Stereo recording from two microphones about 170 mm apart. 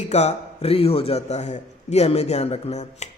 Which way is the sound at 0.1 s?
40° left (ahead or behind).